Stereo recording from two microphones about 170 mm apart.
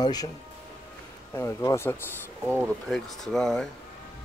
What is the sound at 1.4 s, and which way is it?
Speech, 15° left (ahead or behind).